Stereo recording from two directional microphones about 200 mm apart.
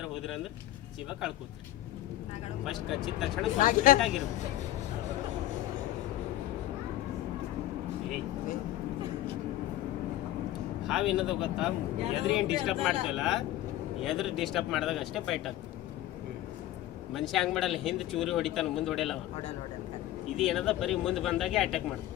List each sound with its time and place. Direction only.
0.0 s vehicle: centre (ahead or behind)
2.6 s speech: centre (ahead or behind)
3.6 s speech: 45° left (ahead or behind)
10.8 s speech: centre (ahead or behind)
17.2 s speech: centre (ahead or behind)
20.3 s speech: centre (ahead or behind)